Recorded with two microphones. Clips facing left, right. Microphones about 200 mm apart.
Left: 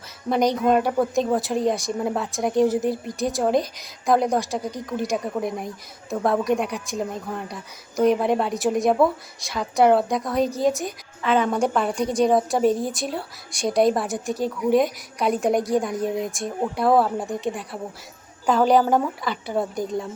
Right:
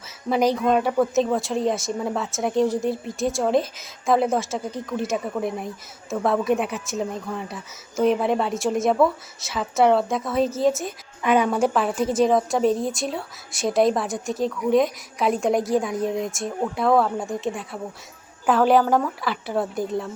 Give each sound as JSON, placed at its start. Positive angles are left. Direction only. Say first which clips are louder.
{"t": 0.3, "sound": "a woman's voice", "louder": "even", "side_deg": -5}
{"t": 11.2, "sound": "a woman's voice", "louder": "right 1 dB", "side_deg": -15}
{"t": 18.9, "sound": "speech", "louder": "even", "side_deg": 20}
{"t": 19.2, "sound": "a woman's voice", "louder": "even", "side_deg": 0}